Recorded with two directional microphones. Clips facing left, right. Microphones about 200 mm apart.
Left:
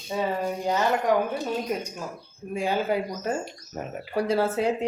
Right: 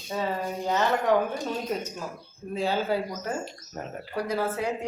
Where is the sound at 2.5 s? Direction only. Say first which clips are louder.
Left 1 dB; 15° left (ahead or behind).